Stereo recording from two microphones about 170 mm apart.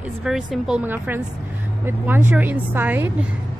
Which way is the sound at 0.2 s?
5° right (ahead or behind).